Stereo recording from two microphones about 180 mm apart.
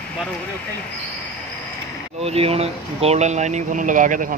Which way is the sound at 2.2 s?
35° right (ahead or behind).